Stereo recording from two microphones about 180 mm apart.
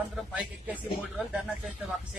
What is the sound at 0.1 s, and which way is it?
Speech, 5° right (ahead or behind).